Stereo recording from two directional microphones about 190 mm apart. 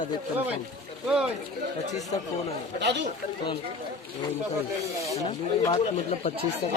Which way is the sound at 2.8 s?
65° right (ahead or behind).